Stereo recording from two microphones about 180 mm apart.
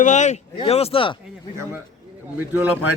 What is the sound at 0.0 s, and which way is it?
Speech, 40° left (ahead or behind).